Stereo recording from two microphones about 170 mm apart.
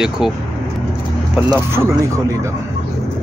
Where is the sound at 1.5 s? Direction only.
15° right (ahead or behind).